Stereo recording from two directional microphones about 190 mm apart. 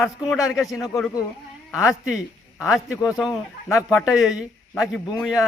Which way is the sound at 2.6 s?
5° right (ahead or behind).